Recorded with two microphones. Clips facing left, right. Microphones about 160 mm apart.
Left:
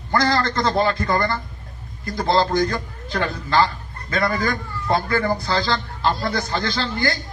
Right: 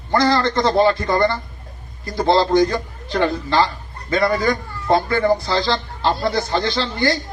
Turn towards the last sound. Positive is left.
turn(degrees=-30)  # may be behind; listen again after turning